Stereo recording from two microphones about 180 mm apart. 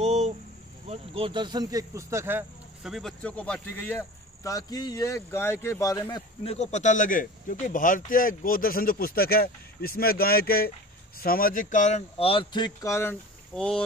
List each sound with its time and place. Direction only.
0.0 s a sound: 40° right (ahead or behind)
0.8 s speech: 30° right (ahead or behind); by 2.4 s 15° right (ahead or behind)
2.8 s speech: centre (ahead or behind); by 6.2 s 20° left (ahead or behind)
6.4 s speech: 35° left (ahead or behind); by 13.8 s 5° left (ahead or behind)